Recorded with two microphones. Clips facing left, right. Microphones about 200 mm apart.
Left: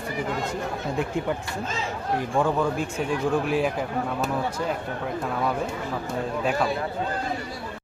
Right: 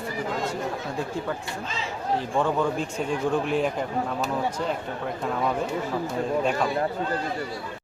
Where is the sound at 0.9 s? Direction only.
20° left (ahead or behind).